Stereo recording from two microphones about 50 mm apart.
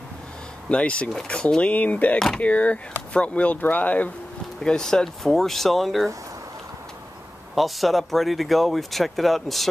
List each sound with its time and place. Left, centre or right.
0.7 s speech: left
1.7 s speech: left
2.1 s speech: centre
2.4 s speech: left
4.6 s speech: centre
7.5 s speech: centre